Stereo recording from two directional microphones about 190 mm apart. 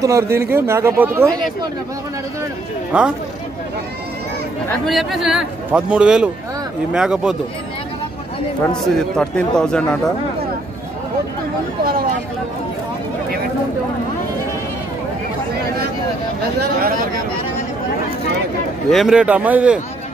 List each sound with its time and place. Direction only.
0.0 s speech: 15° right (ahead or behind)
2.9 s speech: 5° right (ahead or behind)
4.8 s a man's voice: centre (ahead or behind)
8.8 s a man's voice: 5° left (ahead or behind)
18.9 s speech: centre (ahead or behind)